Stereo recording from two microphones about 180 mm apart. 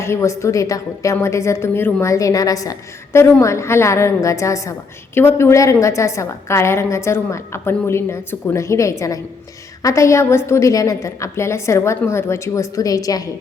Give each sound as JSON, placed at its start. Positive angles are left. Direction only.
{"t": 0.0, "sound": "a woman's voice", "side_deg": 15}